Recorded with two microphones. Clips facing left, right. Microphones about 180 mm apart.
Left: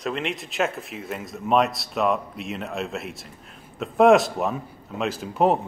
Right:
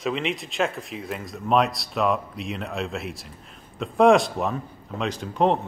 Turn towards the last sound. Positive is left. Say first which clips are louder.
# left 1 dB
turn(degrees=5)  # may be behind; listen again after turning